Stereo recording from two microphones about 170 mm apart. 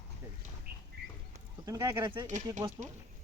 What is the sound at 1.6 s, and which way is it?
Speech, 20° right (ahead or behind).